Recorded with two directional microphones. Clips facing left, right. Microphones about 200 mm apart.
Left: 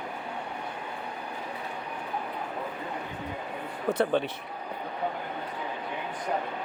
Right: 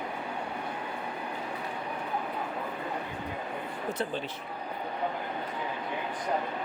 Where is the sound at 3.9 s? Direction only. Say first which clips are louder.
Left 9 dB; 60° left (ahead or behind).